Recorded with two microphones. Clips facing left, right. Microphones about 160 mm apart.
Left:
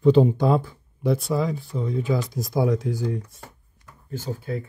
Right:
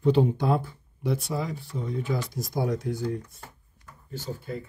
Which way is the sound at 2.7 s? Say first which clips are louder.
Left 3 dB; 90° left.